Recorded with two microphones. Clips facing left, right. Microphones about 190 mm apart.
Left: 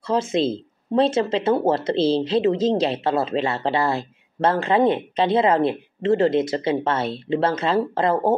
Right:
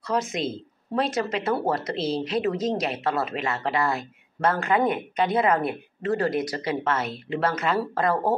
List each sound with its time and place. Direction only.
0.0 s speech: 30° left (ahead or behind)